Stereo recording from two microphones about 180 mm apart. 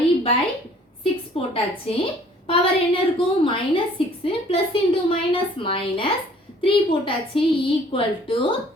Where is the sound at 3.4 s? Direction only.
30° left (ahead or behind).